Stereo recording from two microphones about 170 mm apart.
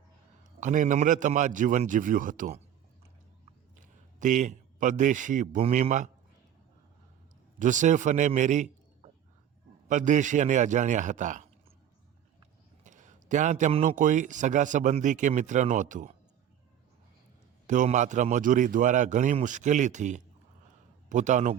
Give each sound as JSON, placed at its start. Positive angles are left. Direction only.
{"t": 0.6, "sound": "speech", "side_deg": -50}
{"t": 4.2, "sound": "speech", "side_deg": -50}
{"t": 7.6, "sound": "speech", "side_deg": -45}
{"t": 9.9, "sound": "speech", "side_deg": -45}
{"t": 12.8, "sound": "speech", "side_deg": -45}
{"t": 17.7, "sound": "speech", "side_deg": -45}